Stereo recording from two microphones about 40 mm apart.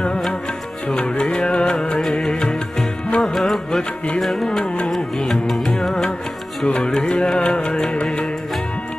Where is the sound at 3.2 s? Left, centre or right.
Centre.